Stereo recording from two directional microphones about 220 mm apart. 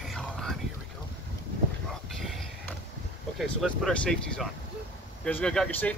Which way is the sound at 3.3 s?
Centre (ahead or behind).